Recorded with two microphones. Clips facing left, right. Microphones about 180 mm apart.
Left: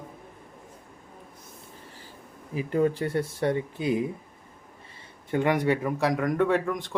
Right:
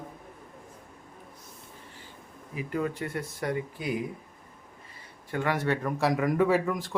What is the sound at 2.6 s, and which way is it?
Speech, 30° left (ahead or behind).